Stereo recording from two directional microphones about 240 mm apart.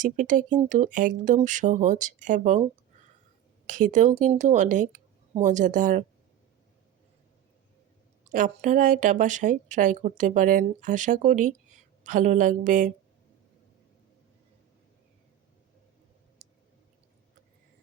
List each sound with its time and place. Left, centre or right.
0.0 s speech: right
3.7 s speech: right
8.3 s speech: right
16.4 s a sound: right